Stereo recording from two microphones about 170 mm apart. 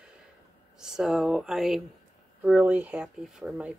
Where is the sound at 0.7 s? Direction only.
5° right (ahead or behind).